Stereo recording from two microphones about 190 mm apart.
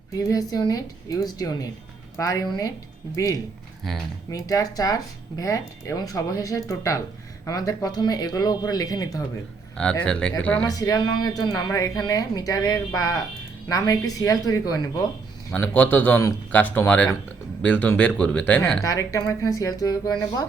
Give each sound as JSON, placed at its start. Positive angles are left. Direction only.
{"t": 0.2, "sound": "speech", "side_deg": 20}
{"t": 10.1, "sound": "speech", "side_deg": 5}
{"t": 10.7, "sound": "speech", "side_deg": 20}
{"t": 18.8, "sound": "speech", "side_deg": 15}